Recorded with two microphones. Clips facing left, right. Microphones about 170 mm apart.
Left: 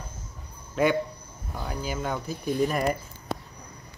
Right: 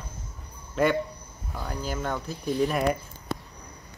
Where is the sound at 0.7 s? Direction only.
Centre (ahead or behind).